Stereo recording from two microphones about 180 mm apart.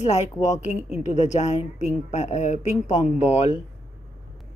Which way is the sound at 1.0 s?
40° left (ahead or behind).